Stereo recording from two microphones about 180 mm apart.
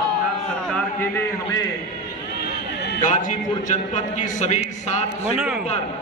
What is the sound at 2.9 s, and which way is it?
A man's voice, 45° left (ahead or behind).